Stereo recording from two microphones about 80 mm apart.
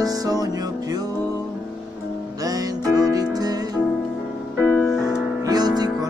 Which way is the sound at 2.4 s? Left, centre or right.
Right.